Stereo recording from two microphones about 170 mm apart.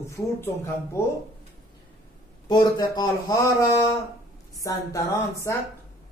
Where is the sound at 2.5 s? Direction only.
20° left (ahead or behind).